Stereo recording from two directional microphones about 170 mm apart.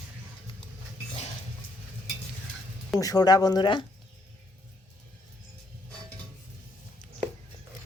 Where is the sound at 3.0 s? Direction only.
20° left (ahead or behind).